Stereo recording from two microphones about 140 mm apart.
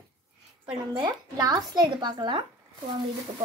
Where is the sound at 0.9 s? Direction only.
30° right (ahead or behind).